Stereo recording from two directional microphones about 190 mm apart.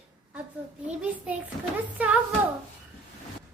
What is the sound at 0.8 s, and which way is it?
A child's voice, 5° right (ahead or behind).